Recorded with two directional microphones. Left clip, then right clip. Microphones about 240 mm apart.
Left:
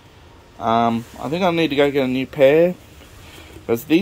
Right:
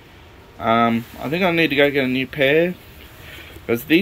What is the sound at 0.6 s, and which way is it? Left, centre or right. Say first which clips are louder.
Speech: even; centre.